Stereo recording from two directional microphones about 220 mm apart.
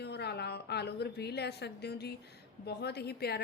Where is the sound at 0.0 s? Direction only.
50° left (ahead or behind).